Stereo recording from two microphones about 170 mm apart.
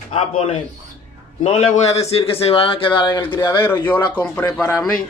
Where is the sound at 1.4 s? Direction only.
40° left (ahead or behind); by 3.6 s 25° left (ahead or behind).